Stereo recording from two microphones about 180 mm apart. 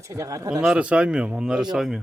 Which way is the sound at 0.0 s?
15° right (ahead or behind).